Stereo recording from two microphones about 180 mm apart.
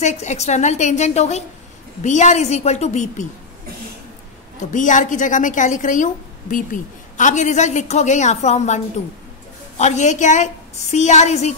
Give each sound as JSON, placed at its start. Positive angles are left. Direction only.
{"t": 0.0, "sound": "a woman's voice", "side_deg": 40}
{"t": 4.6, "sound": "a woman's voice", "side_deg": 45}